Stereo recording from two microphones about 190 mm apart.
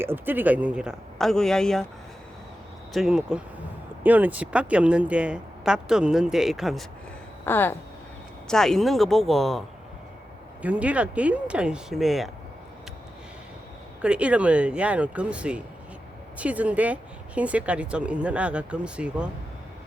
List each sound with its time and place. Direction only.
0.0 s speech: 10° right (ahead or behind)
2.9 s speech: 5° right (ahead or behind)
7.4 s a sound: 10° left (ahead or behind)
8.4 s speech: centre (ahead or behind)
14.0 s speech: 5° right (ahead or behind)